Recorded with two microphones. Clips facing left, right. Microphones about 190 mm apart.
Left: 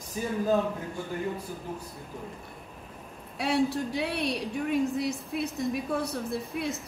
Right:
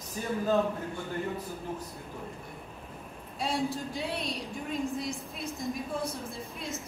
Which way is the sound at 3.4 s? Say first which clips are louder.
Left 5 dB; 70° left (ahead or behind).